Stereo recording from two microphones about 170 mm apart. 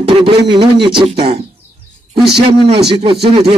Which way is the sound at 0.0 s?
35° right (ahead or behind).